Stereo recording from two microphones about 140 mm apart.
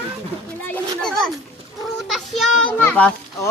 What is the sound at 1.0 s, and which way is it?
Speech, 5° left (ahead or behind).